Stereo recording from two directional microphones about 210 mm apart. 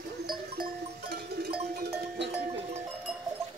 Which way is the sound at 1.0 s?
50° right (ahead or behind).